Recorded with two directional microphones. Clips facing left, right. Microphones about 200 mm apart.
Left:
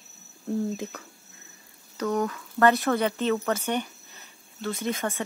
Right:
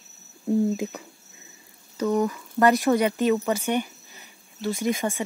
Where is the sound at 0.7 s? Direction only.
15° right (ahead or behind).